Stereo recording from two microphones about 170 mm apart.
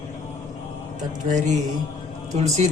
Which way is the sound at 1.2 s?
45° right (ahead or behind).